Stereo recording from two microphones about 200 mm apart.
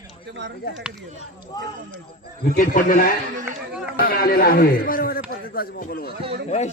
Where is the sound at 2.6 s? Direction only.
40° left (ahead or behind).